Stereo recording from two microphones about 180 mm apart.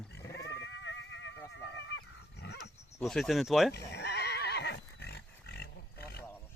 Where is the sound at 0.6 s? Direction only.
90° left.